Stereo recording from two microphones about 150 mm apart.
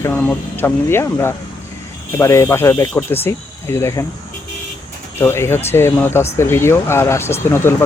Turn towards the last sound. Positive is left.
turn(degrees=15)  # may be behind; listen again after turning